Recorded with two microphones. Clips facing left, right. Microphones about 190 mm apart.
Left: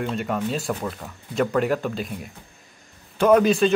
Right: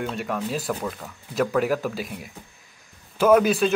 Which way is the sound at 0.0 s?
Centre (ahead or behind).